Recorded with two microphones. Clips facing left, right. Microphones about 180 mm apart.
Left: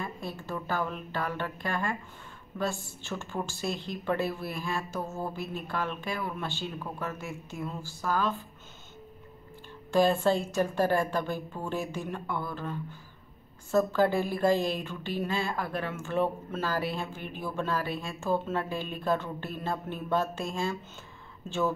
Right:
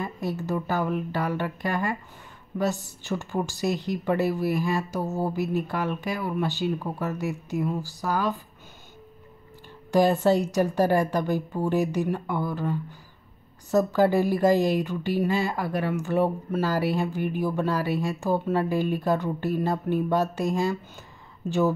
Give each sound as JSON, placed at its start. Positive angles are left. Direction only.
{"t": 0.0, "sound": "a woman's voice", "side_deg": -20}
{"t": 5.0, "sound": "mantra", "side_deg": -35}
{"t": 5.4, "sound": "a woman's voice", "side_deg": -15}
{"t": 9.8, "sound": "a woman's voice", "side_deg": -15}